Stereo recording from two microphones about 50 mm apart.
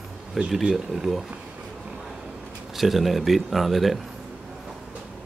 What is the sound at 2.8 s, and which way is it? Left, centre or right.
Speech, centre.